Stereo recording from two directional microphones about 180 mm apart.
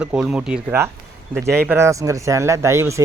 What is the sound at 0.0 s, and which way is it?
A man's voice, 5° right (ahead or behind).